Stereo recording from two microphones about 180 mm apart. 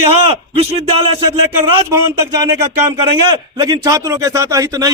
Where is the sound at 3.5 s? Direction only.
20° right (ahead or behind).